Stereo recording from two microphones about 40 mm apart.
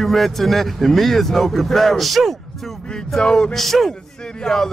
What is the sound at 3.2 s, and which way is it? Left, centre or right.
Speech, left.